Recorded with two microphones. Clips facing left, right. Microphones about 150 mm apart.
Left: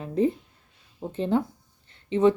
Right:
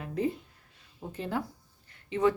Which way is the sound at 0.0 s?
25° left (ahead or behind).